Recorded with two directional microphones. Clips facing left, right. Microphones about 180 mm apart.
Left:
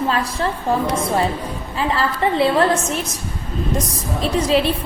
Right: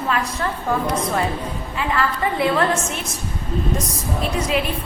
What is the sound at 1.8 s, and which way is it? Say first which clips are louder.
Speech: left 2 dB; 30° left (ahead or behind).